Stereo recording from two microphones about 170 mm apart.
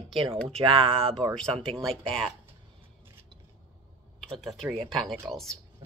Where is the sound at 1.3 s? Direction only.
5° left (ahead or behind).